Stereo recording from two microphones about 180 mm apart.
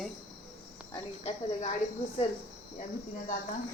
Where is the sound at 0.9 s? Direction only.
35° left (ahead or behind).